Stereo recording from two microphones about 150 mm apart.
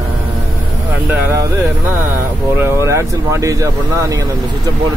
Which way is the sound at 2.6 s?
20° right (ahead or behind).